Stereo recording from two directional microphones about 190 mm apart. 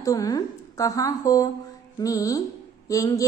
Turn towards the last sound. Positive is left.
turn(degrees=15)  # may be behind; listen again after turning